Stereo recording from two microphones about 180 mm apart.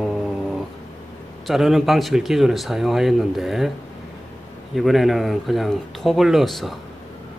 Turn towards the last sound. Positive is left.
turn(degrees=0)  # may be behind; listen again after turning